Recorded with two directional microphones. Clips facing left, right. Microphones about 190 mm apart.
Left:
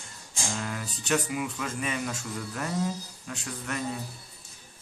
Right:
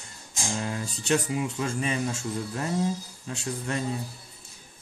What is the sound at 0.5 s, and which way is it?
Speech, 25° right (ahead or behind).